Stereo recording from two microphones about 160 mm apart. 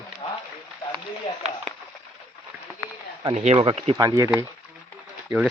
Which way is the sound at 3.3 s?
45° right (ahead or behind).